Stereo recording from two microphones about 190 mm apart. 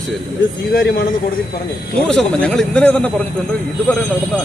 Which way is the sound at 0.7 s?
55° left (ahead or behind).